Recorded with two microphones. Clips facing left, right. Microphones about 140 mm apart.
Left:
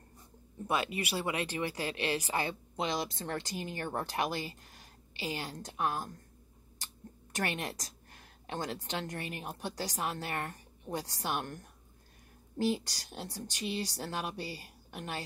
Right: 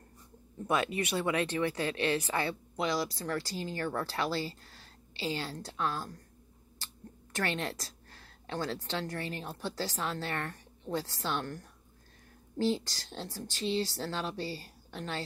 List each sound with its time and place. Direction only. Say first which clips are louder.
0.7 s speech: right 3 dB; 5° left (ahead or behind)
7.3 s a sound: right 2 dB; 15° left (ahead or behind)
8.8 s speech: right 2 dB; 15° left (ahead or behind)